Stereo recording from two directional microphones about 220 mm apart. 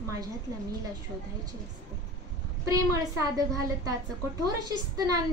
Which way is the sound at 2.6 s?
15° right (ahead or behind).